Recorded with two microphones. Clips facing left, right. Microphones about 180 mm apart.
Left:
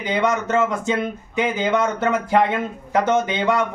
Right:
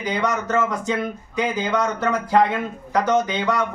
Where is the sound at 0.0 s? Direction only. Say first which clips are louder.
Left 2 dB; 25° left (ahead or behind).